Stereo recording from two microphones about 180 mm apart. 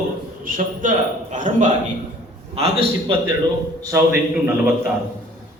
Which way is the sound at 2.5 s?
35° right (ahead or behind).